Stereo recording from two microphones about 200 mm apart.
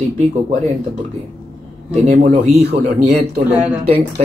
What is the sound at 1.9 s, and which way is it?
Speech, 35° right (ahead or behind).